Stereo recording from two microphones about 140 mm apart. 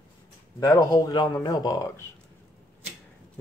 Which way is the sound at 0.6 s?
30° left (ahead or behind).